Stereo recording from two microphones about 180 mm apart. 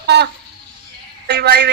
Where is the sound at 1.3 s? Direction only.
65° right (ahead or behind).